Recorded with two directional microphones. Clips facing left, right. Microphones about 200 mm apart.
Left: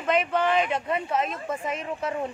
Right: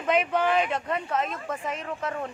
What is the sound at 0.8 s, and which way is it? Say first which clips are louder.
Speech: left 2 dB; 10° left (ahead or behind).